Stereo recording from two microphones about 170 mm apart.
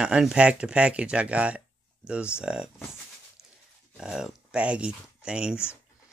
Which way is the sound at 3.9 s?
5° right (ahead or behind).